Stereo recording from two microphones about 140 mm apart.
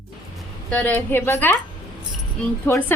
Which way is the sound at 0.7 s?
15° left (ahead or behind).